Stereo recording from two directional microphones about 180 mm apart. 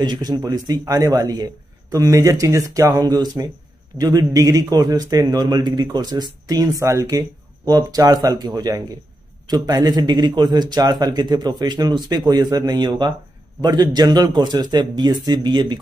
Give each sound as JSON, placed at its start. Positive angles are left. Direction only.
{"t": 0.0, "sound": "a man's voice", "side_deg": -25}